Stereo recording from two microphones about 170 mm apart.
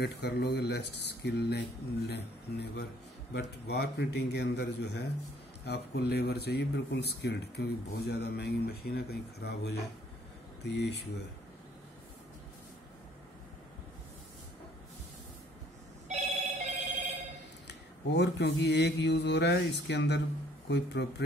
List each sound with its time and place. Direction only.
0.0 s speech: 75° left (ahead or behind)
3.3 s mantra: 80° left
5.7 s speech: 70° left (ahead or behind)
10.6 s mantra: 85° left
16.1 s telephone bell ringing: 45° right (ahead or behind)
17.6 s mantra: 85° left